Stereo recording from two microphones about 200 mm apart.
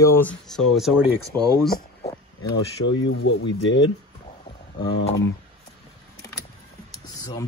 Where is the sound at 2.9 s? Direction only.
75° left (ahead or behind).